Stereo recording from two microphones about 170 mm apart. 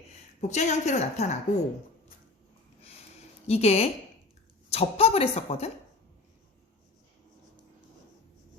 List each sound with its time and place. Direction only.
0.4 s a woman's voice: 45° left (ahead or behind)
3.4 s a woman's voice: 40° left (ahead or behind)